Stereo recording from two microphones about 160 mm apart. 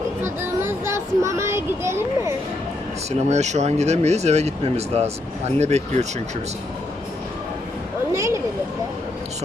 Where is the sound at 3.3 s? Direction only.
45° right (ahead or behind).